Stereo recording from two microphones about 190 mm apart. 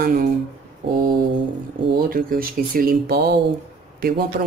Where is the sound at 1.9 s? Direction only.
50° right (ahead or behind).